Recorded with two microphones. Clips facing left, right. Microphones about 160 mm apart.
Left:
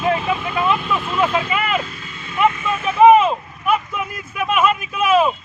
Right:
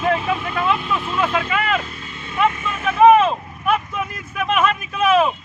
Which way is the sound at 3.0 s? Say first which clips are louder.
Left 1 dB; 10° left (ahead or behind).